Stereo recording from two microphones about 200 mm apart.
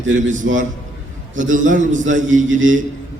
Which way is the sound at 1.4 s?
40° right (ahead or behind).